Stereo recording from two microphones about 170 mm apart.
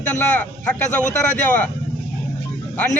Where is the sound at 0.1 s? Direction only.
5° left (ahead or behind).